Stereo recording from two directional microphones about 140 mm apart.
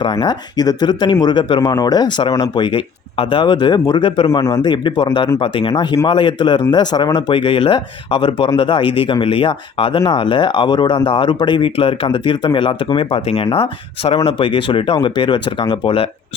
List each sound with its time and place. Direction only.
0.0 s speech: 35° left (ahead or behind)
4.3 s speech: 25° left (ahead or behind); by 16.0 s 40° left (ahead or behind)